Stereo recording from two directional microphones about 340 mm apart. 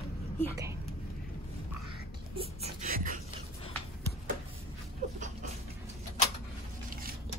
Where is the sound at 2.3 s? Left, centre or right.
Right.